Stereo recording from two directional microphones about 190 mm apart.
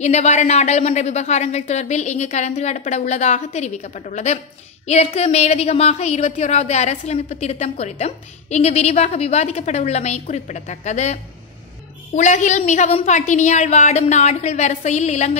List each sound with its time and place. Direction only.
0.0 s a woman's voice: 35° left (ahead or behind)